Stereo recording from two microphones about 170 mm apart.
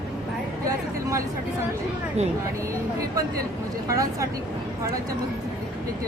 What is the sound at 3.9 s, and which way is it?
Speech, 20° right (ahead or behind).